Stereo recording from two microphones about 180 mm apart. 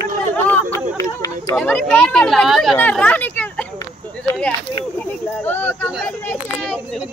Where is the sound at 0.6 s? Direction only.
15° left (ahead or behind).